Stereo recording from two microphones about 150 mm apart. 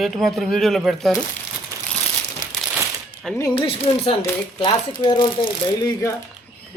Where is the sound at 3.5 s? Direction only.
35° left (ahead or behind).